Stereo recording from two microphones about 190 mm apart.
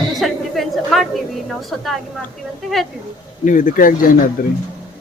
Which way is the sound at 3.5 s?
45° left (ahead or behind).